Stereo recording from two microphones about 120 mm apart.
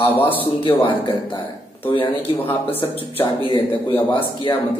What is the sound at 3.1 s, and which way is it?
Speech, 45° left (ahead or behind).